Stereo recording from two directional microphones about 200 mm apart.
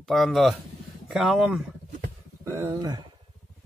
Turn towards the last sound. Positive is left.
turn(degrees=-20)  # may be behind; listen again after turning